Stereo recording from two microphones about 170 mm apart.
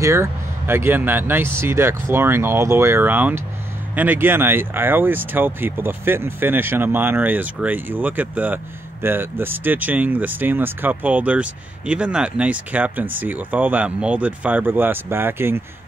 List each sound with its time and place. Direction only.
0.0 s speech: 15° right (ahead or behind)